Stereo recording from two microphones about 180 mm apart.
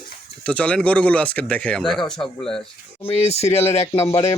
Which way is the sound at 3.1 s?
35° left (ahead or behind).